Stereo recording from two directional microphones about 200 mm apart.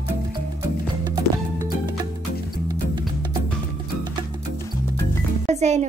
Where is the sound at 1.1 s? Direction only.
20° right (ahead or behind).